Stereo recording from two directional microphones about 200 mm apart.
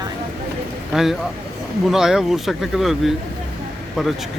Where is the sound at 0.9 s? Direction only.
Centre (ahead or behind).